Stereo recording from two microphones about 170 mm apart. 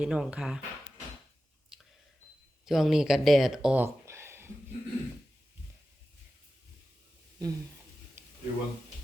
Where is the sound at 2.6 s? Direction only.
Centre (ahead or behind).